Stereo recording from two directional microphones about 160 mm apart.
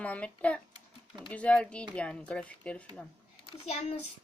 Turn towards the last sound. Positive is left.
turn(degrees=40)  # may be behind; listen again after turning